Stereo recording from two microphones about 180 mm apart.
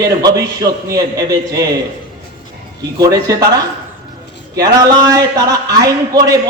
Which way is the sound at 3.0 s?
20° right (ahead or behind).